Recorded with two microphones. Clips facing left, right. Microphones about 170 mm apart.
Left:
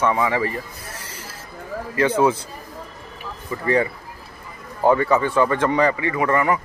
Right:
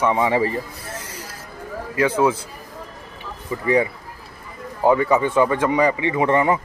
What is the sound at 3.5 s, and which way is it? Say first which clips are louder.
Speech: right 2 dB; 15° right (ahead or behind).